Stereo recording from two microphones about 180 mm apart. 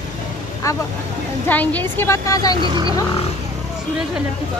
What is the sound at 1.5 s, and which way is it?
A woman's voice, 10° left (ahead or behind).